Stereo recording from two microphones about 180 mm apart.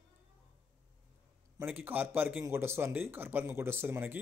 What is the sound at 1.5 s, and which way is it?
Speech, 10° right (ahead or behind).